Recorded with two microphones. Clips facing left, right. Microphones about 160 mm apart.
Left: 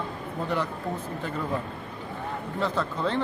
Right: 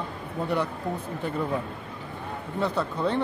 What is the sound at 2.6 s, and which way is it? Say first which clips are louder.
Speech: right 2 dB; 15° right (ahead or behind).